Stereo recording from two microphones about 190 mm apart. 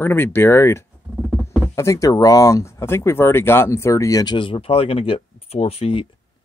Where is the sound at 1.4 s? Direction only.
15° left (ahead or behind); by 6.0 s 30° left (ahead or behind).